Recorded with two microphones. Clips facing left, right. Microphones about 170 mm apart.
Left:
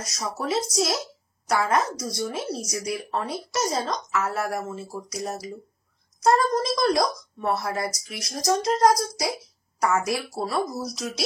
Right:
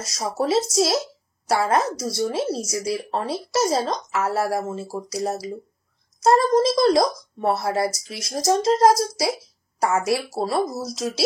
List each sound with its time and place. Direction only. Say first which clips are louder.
0.0 s speech: right 6 dB; 30° right (ahead or behind)